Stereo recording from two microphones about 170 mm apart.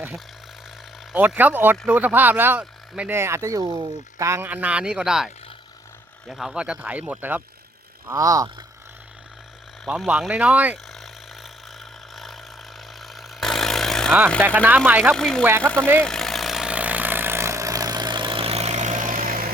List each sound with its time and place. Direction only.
1.1 s speech: 10° right (ahead or behind)
8.0 s speech: 20° right (ahead or behind)
9.8 s speech: 5° right (ahead or behind)
10.9 s vehicle: centre (ahead or behind)
13.0 s a sound: centre (ahead or behind)
14.4 s speech: 10° right (ahead or behind)
15.1 s speech: 5° left (ahead or behind)
16.0 s vehicle: 5° left (ahead or behind); by 19.5 s 55° right (ahead or behind)